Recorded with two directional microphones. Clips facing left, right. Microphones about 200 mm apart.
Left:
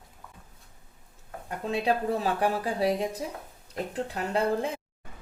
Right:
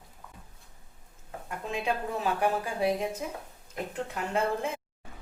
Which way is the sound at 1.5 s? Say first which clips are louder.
Left 4 dB; 35° left (ahead or behind).